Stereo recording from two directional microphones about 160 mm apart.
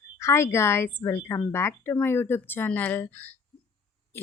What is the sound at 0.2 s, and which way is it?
Speech, 15° left (ahead or behind).